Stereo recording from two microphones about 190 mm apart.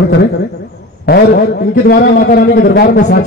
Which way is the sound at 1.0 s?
55° left (ahead or behind).